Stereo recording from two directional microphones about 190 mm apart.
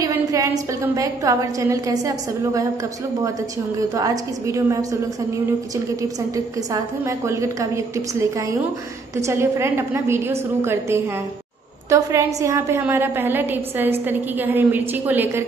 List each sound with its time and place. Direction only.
0.0 s a woman's voice: 15° right (ahead or behind)
3.9 s a woman's voice: 15° right (ahead or behind)
6.3 s a woman's voice: 15° right (ahead or behind)